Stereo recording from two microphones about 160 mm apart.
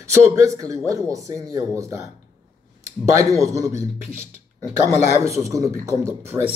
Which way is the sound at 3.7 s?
45° left (ahead or behind).